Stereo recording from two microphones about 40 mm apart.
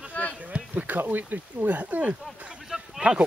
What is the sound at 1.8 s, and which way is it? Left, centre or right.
Speech, right.